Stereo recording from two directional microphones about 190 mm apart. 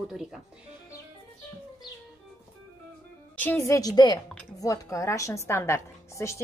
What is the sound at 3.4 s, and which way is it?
A woman's voice, 10° left (ahead or behind).